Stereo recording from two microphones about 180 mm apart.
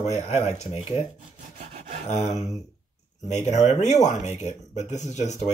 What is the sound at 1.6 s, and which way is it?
Rub, 35° right (ahead or behind).